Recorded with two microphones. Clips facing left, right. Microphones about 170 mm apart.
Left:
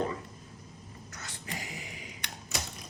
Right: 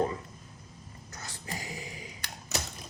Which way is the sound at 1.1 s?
35° right (ahead or behind).